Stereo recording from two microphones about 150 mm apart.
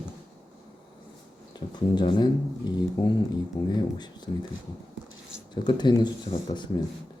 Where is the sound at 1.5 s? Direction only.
30° left (ahead or behind).